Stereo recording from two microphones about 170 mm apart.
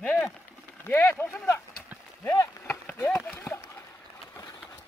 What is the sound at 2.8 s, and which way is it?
Clip-clop, 10° left (ahead or behind).